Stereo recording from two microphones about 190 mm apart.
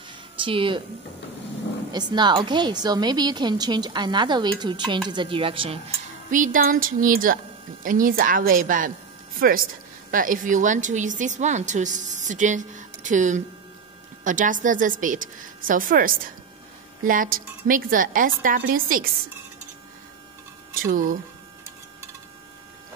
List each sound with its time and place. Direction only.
0.4 s a woman's voice: 25° right (ahead or behind)
1.9 s a woman's voice: 20° right (ahead or behind)
6.3 s a woman's voice: 45° right (ahead or behind)
20.8 s a woman's voice: 45° right (ahead or behind)